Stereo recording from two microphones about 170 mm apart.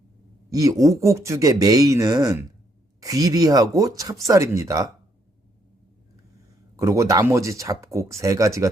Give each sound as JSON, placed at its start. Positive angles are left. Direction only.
{"t": 0.5, "sound": "speech", "side_deg": -20}
{"t": 6.7, "sound": "speech", "side_deg": -20}